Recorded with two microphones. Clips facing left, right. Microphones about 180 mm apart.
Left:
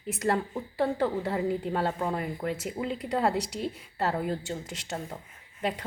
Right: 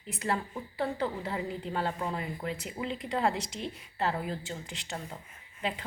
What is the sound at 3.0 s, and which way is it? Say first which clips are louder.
Speech: left 3 dB; 40° left (ahead or behind).